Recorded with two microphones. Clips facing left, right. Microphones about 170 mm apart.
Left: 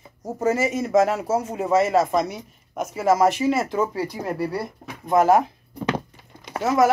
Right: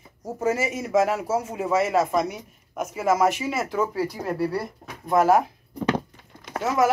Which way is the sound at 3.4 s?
35° left (ahead or behind).